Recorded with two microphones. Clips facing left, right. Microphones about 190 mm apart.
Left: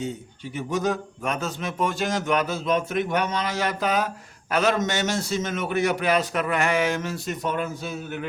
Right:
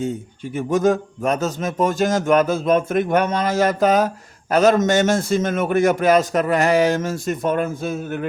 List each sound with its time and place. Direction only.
0.5 s a man's voice: 50° right (ahead or behind)